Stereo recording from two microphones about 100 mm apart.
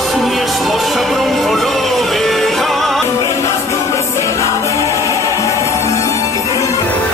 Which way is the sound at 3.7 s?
30° left (ahead or behind).